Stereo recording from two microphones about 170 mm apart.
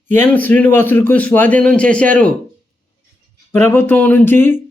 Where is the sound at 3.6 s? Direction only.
10° left (ahead or behind).